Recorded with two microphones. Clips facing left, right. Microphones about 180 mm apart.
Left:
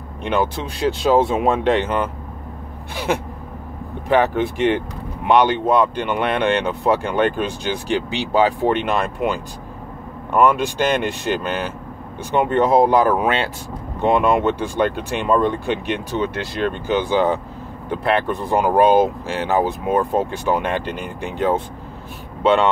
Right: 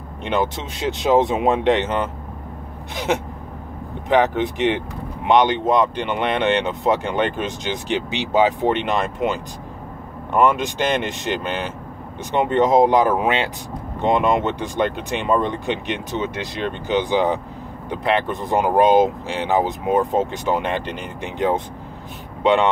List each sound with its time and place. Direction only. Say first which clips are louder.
0.2 s speech: left 1 dB; 20° right (ahead or behind)
4.1 s speech: even; 20° right (ahead or behind)
10.4 s speech: left 2 dB; 20° right (ahead or behind)